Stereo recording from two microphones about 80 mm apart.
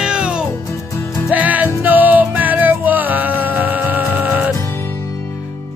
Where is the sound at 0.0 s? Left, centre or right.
Centre.